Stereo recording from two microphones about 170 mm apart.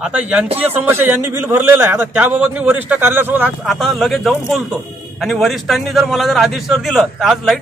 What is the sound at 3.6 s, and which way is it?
Speech, centre (ahead or behind).